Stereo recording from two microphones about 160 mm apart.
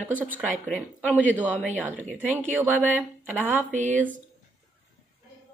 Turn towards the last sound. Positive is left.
turn(degrees=-50)  # may be behind; listen again after turning